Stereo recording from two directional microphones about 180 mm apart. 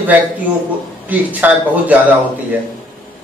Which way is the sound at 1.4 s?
10° right (ahead or behind).